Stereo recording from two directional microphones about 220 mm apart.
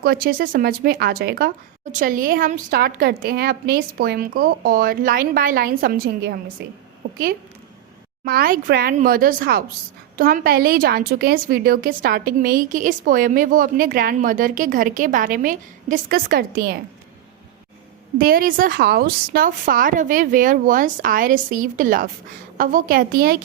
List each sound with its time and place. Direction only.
0.0 s a woman's voice: 40° right (ahead or behind)
8.2 s a woman's voice: 40° right (ahead or behind)
18.2 s a woman's voice: 40° right (ahead or behind)